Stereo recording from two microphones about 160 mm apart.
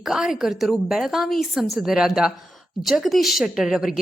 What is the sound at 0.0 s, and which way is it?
A woman's voice, 5° right (ahead or behind).